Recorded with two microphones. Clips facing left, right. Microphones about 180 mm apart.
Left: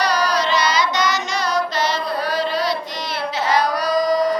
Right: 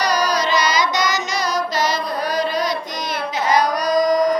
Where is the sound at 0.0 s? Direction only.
15° right (ahead or behind).